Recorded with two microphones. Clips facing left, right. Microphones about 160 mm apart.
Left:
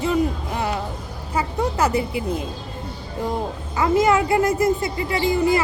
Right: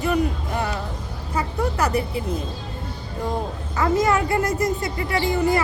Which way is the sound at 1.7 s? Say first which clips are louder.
Left 3 dB; 20° left (ahead or behind).